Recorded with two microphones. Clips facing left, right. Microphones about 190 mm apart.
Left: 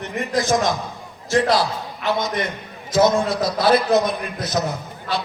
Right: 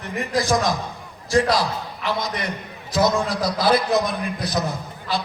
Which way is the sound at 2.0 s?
25° left (ahead or behind).